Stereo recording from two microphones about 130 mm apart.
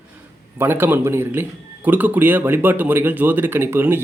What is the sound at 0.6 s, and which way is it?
Speech, 15° right (ahead or behind).